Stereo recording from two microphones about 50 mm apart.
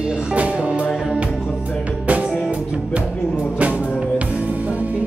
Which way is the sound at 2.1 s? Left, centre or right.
Right.